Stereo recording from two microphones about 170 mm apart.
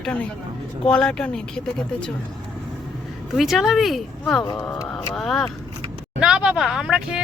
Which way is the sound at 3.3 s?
Centre (ahead or behind).